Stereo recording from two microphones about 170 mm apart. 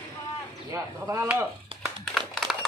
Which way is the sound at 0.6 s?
20° right (ahead or behind).